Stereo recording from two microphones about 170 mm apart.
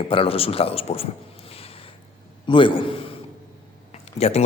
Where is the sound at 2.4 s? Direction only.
30° left (ahead or behind).